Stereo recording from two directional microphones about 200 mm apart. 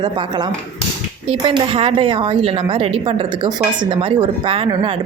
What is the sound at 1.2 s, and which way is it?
Speech, 25° right (ahead or behind).